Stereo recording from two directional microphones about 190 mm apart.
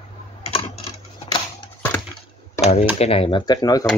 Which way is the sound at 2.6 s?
35° left (ahead or behind).